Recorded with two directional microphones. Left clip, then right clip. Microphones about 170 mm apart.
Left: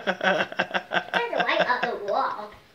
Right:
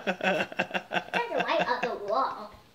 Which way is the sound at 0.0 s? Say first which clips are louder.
Left 4 dB; 25° right (ahead or behind).